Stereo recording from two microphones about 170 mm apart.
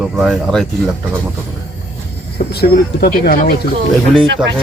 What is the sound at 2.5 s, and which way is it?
Speech, 65° left (ahead or behind).